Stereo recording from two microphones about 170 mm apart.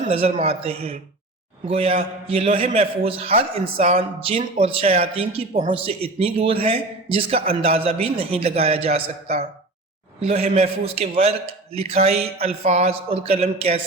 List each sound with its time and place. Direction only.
0.1 s a man's voice: 35° right (ahead or behind)